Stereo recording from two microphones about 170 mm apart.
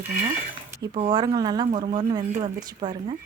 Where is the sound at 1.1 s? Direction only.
25° right (ahead or behind).